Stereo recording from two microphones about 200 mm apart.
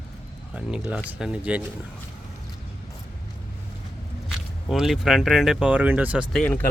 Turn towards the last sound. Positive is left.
turn(degrees=5)  # may be behind; listen again after turning